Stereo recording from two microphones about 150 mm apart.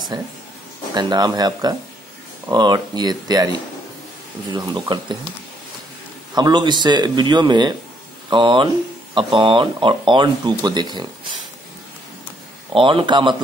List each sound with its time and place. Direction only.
0.1 s speech: 30° right (ahead or behind)
6.3 s speech: 30° right (ahead or behind)
12.7 s speech: 35° right (ahead or behind)